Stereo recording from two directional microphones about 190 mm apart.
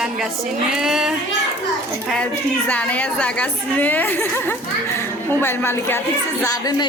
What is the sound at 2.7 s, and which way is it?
A woman's voice, 5° left (ahead or behind).